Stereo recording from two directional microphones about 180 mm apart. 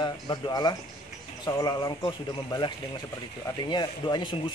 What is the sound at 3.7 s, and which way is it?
Speech, 25° left (ahead or behind).